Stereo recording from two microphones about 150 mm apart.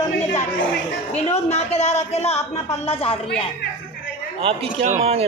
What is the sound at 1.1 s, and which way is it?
A woman's voice, 45° left (ahead or behind).